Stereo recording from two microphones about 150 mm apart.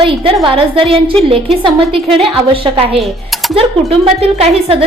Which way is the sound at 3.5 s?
40° right (ahead or behind).